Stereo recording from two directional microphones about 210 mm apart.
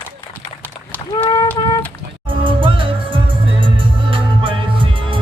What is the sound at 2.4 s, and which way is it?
Music, 25° right (ahead or behind).